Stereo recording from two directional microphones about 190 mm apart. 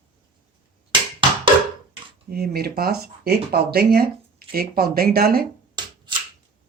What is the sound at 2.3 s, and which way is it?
Speech, 55° right (ahead or behind).